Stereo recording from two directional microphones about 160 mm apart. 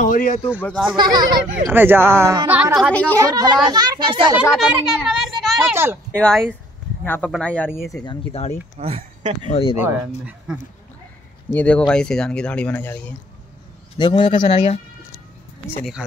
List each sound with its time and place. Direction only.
0.0 s a man's voice: 55° left (ahead or behind)
0.7 s speech: centre (ahead or behind)
0.9 s a child's voice: 25° right (ahead or behind)
1.7 s speech: 15° right (ahead or behind)
2.9 s speech: 10° left (ahead or behind)
3.2 s a child's voice: 25° right (ahead or behind)
4.4 s a child's voice: 5° right (ahead or behind)
7.9 s a man's voice: 25° left (ahead or behind)
8.3 s speech: 40° left (ahead or behind)
8.7 s speech: 45° right (ahead or behind)
9.5 s speech: 35° left (ahead or behind)
11.5 s speech: 10° left (ahead or behind)
13.9 s a man's voice: 30° left (ahead or behind)
15.8 s speech: 5° right (ahead or behind)